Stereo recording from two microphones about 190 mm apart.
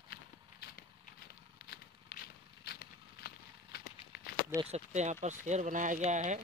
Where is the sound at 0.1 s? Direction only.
55° left (ahead or behind).